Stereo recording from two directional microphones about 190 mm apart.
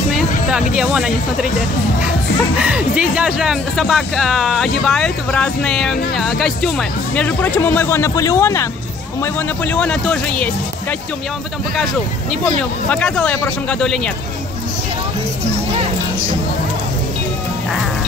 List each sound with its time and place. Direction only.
0.7 s speech: 5° right (ahead or behind)
2.5 s speech: 5° right (ahead or behind)